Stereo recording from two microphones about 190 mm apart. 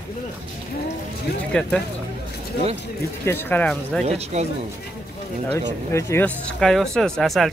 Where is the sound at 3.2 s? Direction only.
10° left (ahead or behind).